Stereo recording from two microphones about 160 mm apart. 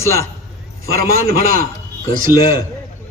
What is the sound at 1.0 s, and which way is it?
Speech, 65° right (ahead or behind).